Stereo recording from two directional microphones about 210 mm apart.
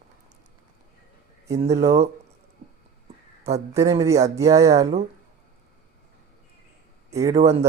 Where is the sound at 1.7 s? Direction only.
15° right (ahead or behind).